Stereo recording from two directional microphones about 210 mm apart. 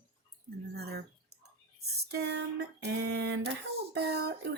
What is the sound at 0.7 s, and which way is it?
Drip, 50° right (ahead or behind).